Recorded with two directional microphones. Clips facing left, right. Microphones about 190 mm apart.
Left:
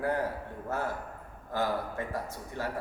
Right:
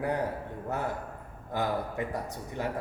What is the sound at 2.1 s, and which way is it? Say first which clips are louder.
Speech: right 1 dB; 20° right (ahead or behind).